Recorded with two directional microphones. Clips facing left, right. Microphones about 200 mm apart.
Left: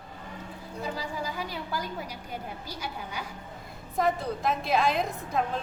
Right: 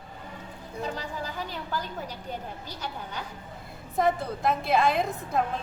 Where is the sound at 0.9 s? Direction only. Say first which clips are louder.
Left 1 dB; 10° left (ahead or behind).